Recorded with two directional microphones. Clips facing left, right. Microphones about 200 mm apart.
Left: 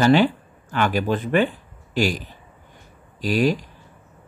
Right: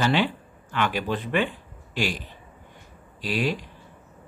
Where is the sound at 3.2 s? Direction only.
45° left (ahead or behind).